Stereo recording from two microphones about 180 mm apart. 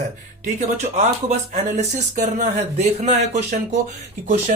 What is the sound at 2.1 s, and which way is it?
Speech, 40° right (ahead or behind).